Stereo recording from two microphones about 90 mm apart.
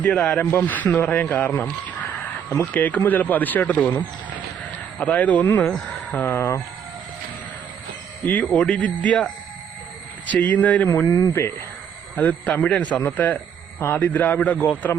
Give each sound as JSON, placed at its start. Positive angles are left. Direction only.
{"t": 0.0, "sound": "a man's voice", "side_deg": 10}
{"t": 2.5, "sound": "a man's voice", "side_deg": 20}
{"t": 8.2, "sound": "a man's voice", "side_deg": 20}
{"t": 10.2, "sound": "speech", "side_deg": 15}
{"t": 10.8, "sound": "speech", "side_deg": 40}
{"t": 11.3, "sound": "a man's voice", "side_deg": 30}
{"t": 12.1, "sound": "a man's voice", "side_deg": 15}